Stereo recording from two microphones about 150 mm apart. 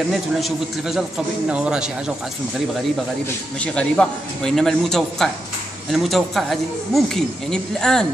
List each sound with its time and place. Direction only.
0.1 s speech: centre (ahead or behind)
3.6 s speech: 5° left (ahead or behind)